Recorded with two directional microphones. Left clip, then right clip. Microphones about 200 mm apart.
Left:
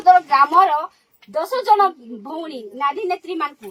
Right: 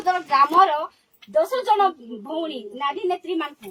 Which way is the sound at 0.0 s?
5° right (ahead or behind).